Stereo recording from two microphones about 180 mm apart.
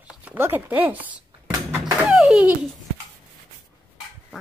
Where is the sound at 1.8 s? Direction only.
5° right (ahead or behind).